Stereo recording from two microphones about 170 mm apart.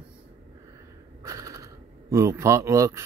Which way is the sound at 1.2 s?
20° right (ahead or behind).